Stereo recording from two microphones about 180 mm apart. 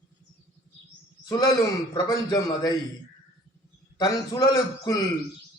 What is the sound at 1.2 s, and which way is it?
Speech, 25° left (ahead or behind).